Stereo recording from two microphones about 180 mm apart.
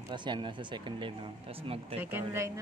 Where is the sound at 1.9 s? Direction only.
10° right (ahead or behind).